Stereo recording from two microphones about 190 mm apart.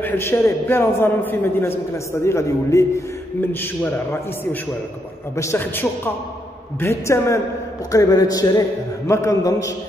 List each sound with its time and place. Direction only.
0.0 s a man's voice: 15° left (ahead or behind)